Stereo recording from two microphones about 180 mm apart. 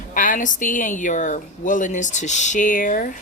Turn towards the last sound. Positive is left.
turn(degrees=50)  # may be behind; listen again after turning